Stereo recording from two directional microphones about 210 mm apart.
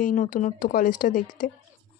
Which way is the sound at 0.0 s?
40° left (ahead or behind).